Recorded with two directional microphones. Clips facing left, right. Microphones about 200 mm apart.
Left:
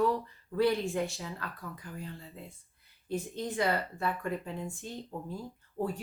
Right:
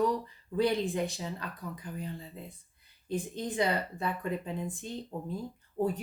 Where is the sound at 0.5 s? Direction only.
15° right (ahead or behind).